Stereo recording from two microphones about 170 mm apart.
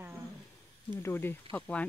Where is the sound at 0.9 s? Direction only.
15° left (ahead or behind).